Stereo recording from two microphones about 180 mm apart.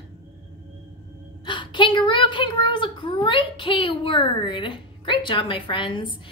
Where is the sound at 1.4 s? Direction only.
25° left (ahead or behind).